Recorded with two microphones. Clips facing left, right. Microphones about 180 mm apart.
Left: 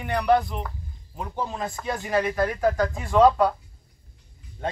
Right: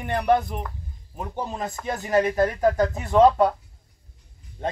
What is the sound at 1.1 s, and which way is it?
Speech, 20° right (ahead or behind).